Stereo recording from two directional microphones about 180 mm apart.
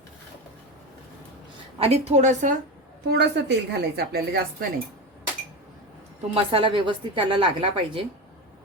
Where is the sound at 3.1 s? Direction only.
65° right (ahead or behind).